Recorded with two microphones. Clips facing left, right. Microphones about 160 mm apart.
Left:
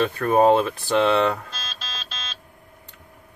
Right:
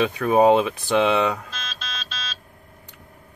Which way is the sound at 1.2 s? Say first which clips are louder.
Left 1 dB; centre (ahead or behind).